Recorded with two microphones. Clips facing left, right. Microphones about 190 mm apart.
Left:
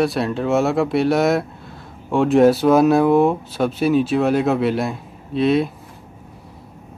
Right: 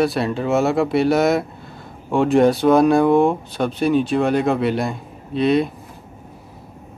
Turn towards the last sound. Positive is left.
turn(degrees=0)  # may be behind; listen again after turning